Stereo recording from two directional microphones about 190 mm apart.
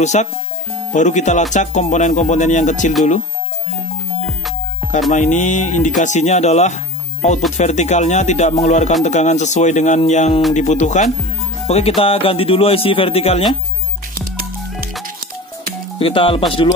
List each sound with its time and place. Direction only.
0.0 s speech: 35° left (ahead or behind)
5.1 s speech: 40° left (ahead or behind)
16.0 s speech: 30° left (ahead or behind)